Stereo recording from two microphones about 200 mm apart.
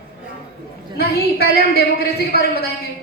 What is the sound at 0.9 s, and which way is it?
Speech, 50° left (ahead or behind).